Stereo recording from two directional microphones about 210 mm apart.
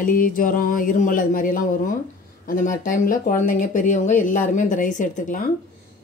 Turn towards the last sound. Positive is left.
turn(degrees=40)  # may be behind; listen again after turning